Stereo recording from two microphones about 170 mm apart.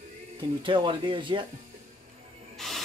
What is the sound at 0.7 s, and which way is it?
Speech, 30° right (ahead or behind).